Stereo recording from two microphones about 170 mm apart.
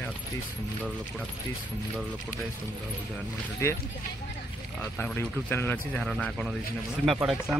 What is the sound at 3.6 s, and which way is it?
Speech, 15° left (ahead or behind).